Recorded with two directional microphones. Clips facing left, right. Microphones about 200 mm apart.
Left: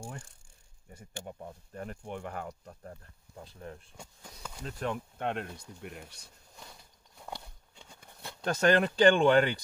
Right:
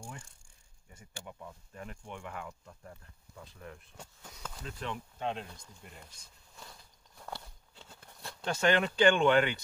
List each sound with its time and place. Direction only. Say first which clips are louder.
0.9 s speech: left 5 dB; 40° left (ahead or behind)
3.9 s speech: left 1 dB; 10° left (ahead or behind)
4.6 s speech: left 6 dB; 45° left (ahead or behind); by 6.3 s 70° left (ahead or behind)
7.2 s a sound: left 1 dB; 15° left (ahead or behind)
8.5 s speech: left 3 dB; 40° left (ahead or behind)